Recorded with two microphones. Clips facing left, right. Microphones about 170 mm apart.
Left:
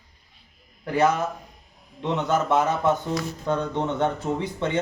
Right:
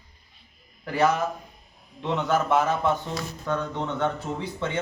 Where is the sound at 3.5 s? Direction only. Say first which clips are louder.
Left 3 dB; 25° left (ahead or behind).